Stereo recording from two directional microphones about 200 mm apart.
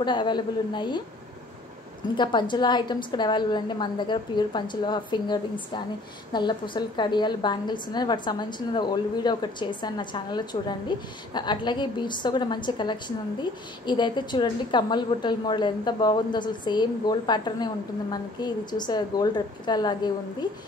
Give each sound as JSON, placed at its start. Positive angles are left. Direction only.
{"t": 0.0, "sound": "a woman's voice", "side_deg": 20}
{"t": 2.1, "sound": "a woman's voice", "side_deg": 25}